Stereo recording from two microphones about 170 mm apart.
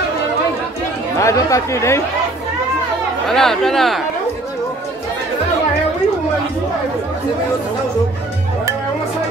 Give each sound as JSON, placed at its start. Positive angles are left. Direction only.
{"t": 1.1, "sound": "speech", "side_deg": 15}
{"t": 3.3, "sound": "speech", "side_deg": 0}